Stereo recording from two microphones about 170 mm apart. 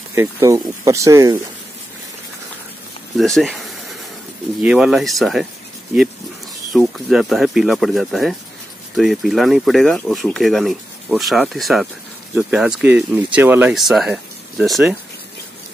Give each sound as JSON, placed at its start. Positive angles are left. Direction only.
{"t": 0.1, "sound": "speech", "side_deg": -15}
{"t": 3.2, "sound": "speech", "side_deg": 0}
{"t": 6.7, "sound": "speech", "side_deg": 0}